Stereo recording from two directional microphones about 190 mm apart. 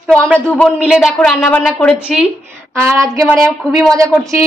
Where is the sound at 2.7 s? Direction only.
15° right (ahead or behind).